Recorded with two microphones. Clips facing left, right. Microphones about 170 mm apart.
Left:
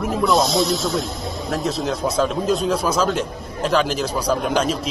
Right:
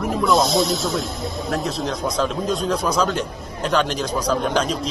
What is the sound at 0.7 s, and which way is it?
A man's voice, centre (ahead or behind).